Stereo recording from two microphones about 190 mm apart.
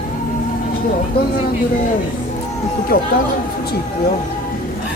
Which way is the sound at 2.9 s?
50° left (ahead or behind).